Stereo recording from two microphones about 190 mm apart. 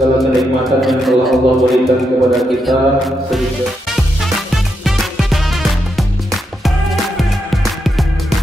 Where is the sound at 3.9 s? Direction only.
Centre (ahead or behind).